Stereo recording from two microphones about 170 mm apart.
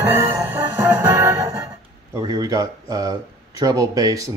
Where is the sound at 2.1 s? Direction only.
20° right (ahead or behind).